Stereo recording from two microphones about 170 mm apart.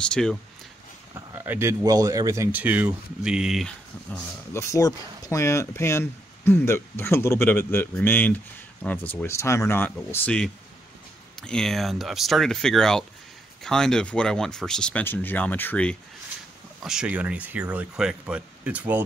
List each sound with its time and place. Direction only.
0.0 s speech: 5° left (ahead or behind)
1.1 s speech: 15° right (ahead or behind)
4.6 s speech: 20° left (ahead or behind)
16.8 s speech: 5° right (ahead or behind)